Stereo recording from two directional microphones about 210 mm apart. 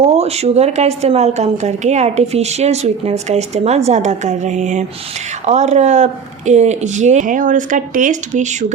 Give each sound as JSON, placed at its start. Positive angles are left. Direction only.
{"t": 0.0, "sound": "speech", "side_deg": -30}